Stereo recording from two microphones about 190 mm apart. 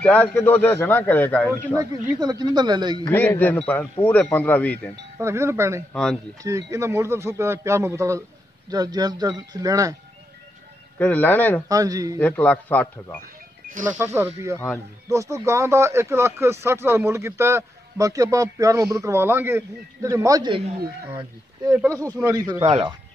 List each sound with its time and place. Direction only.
0.0 s a man's voice: 5° left (ahead or behind)
1.8 s speech: 20° right (ahead or behind)
3.1 s a man's voice: 10° left (ahead or behind)
5.2 s speech: 15° right (ahead or behind)
11.0 s a man's voice: 10° left (ahead or behind)
11.7 s speech: 20° right (ahead or behind)
12.2 s a man's voice: 10° left (ahead or behind)
13.2 s music: 45° right (ahead or behind)
13.9 s speech: 15° right (ahead or behind)
21.7 s speech: 15° right (ahead or behind)